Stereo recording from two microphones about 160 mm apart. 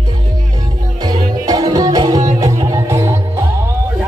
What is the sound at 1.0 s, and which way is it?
Music, 25° right (ahead or behind).